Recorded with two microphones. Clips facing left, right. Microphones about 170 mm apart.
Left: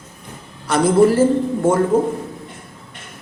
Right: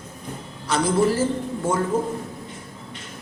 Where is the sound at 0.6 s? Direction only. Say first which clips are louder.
Left 7 dB; 55° left (ahead or behind).